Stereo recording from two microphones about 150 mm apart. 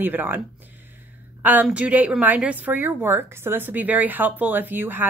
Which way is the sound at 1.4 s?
10° right (ahead or behind).